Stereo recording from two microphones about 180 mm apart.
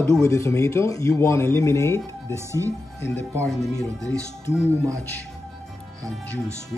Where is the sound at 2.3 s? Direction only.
15° right (ahead or behind).